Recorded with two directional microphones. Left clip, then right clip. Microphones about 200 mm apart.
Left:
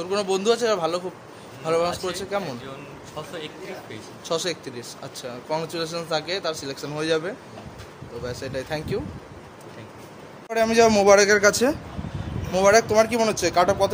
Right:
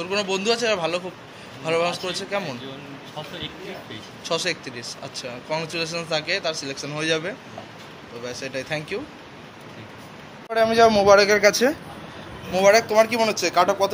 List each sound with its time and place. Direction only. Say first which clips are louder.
0.0 s speech: left 1 dB; 25° left (ahead or behind)
4.2 s speech: right 2 dB; 25° left (ahead or behind)
10.5 s speech: right 2 dB; 30° left (ahead or behind)